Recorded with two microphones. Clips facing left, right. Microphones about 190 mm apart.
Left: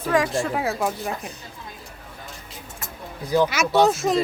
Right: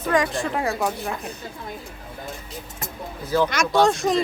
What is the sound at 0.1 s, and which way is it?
A woman's voice, centre (ahead or behind).